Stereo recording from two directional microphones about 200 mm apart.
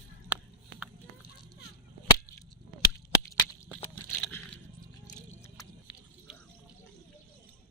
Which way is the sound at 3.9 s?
10° left (ahead or behind).